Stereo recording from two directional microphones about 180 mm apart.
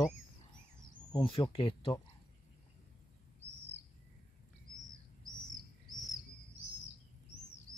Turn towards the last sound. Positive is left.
turn(degrees=0)  # may be behind; listen again after turning